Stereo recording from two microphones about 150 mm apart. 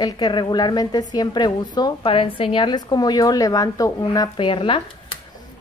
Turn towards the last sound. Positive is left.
turn(degrees=35)  # may be behind; listen again after turning